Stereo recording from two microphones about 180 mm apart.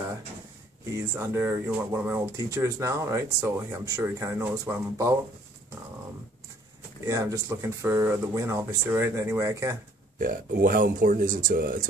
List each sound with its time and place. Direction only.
0.9 s speech: 15° right (ahead or behind)
7.1 s speech: 20° right (ahead or behind)
10.2 s speech: 50° right (ahead or behind)